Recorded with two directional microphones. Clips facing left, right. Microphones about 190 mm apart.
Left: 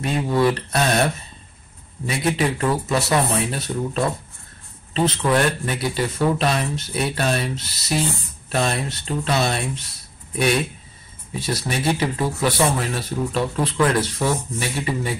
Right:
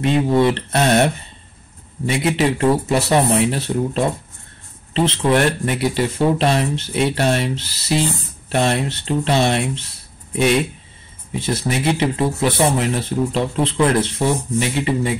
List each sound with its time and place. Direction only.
0.0 s speech: 25° right (ahead or behind)